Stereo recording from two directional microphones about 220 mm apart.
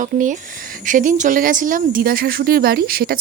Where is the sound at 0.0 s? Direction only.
35° right (ahead or behind).